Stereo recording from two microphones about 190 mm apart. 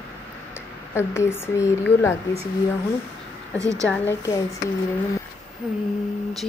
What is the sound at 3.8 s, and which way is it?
Speech, 10° left (ahead or behind).